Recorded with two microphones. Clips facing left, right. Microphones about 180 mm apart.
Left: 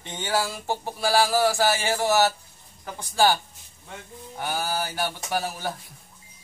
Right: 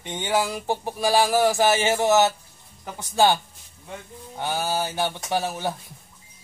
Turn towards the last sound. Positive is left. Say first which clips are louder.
# right 3 dB
turn(degrees=-25)  # may be behind; listen again after turning